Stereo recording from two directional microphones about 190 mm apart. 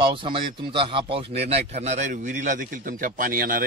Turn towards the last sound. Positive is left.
turn(degrees=-50)  # may be behind; listen again after turning